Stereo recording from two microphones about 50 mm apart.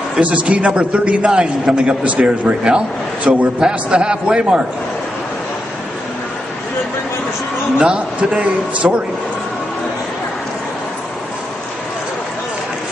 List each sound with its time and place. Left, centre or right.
0.2 s a man's voice: right
7.8 s a man's voice: right